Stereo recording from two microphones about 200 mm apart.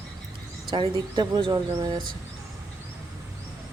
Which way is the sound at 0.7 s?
20° right (ahead or behind).